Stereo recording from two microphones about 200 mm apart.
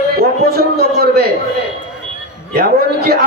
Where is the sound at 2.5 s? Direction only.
50° right (ahead or behind).